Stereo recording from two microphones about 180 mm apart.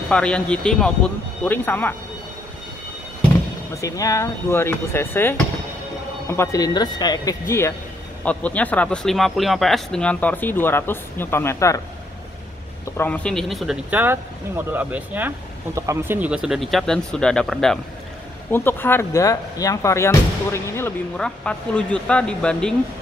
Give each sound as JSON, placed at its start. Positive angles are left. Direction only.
{"t": 0.1, "sound": "speech", "side_deg": 5}
{"t": 3.7, "sound": "speech", "side_deg": 15}
{"t": 12.9, "sound": "speech", "side_deg": 10}